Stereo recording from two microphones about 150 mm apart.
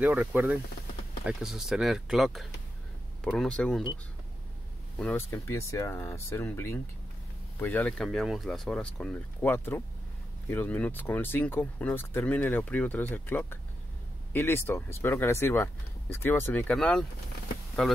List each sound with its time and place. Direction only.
0.0 s speech: 10° right (ahead or behind); by 3.8 s 5° left (ahead or behind)
4.9 s speech: 5° left (ahead or behind)
5.3 s speech: 20° left (ahead or behind)
8.1 s speech: centre (ahead or behind)